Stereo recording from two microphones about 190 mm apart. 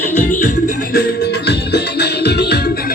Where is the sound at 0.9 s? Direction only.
60° left (ahead or behind).